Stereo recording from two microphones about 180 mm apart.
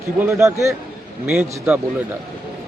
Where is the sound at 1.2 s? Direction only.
5° right (ahead or behind).